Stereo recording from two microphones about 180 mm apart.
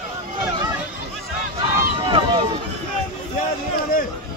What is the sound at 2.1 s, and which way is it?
Speech, 30° right (ahead or behind).